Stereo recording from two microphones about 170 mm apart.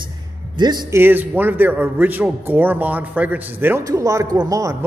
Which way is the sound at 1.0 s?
10° right (ahead or behind).